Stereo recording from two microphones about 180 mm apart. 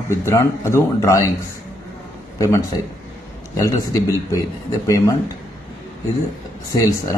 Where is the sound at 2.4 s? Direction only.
15° left (ahead or behind).